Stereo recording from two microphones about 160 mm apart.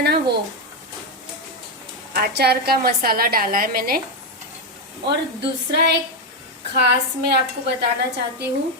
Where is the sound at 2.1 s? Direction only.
80° right.